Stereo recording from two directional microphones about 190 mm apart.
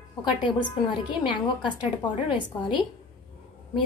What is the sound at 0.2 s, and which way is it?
A woman's voice, 25° left (ahead or behind).